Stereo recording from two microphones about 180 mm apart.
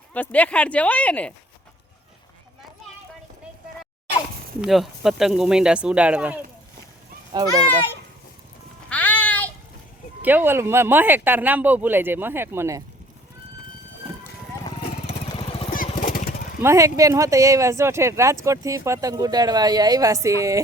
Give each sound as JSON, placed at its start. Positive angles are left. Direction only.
{"t": 0.1, "sound": "speech", "side_deg": 10}
{"t": 4.6, "sound": "speech", "side_deg": 0}
{"t": 7.3, "sound": "a child's voice", "side_deg": -20}
{"t": 8.9, "sound": "music", "side_deg": 10}
{"t": 10.2, "sound": "speech", "side_deg": -10}
{"t": 16.0, "sound": "lawn mower", "side_deg": 50}
{"t": 16.6, "sound": "speech", "side_deg": -15}